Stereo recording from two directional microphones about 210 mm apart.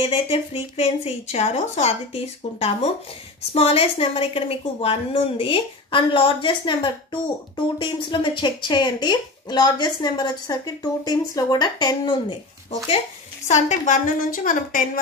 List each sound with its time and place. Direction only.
0.0 s speech: 25° left (ahead or behind)
13.5 s a woman's voice: 35° left (ahead or behind)